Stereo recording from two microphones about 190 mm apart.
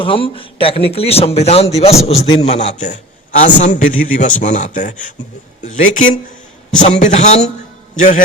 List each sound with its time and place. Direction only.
0.0 s a man's voice: 30° left (ahead or behind)
6.7 s a man's voice: 40° left (ahead or behind)